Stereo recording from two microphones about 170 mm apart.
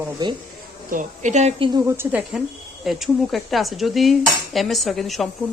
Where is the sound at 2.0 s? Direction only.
10° right (ahead or behind).